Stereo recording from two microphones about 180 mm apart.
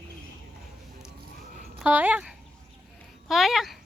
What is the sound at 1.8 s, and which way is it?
A child's voice, 10° right (ahead or behind).